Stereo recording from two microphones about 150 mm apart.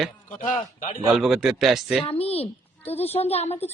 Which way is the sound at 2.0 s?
40° left (ahead or behind).